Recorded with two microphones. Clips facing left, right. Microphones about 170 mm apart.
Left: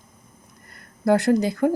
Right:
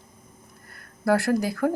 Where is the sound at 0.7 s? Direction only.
20° left (ahead or behind).